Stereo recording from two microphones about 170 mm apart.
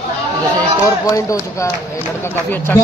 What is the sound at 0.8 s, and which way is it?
A man's voice, 20° left (ahead or behind).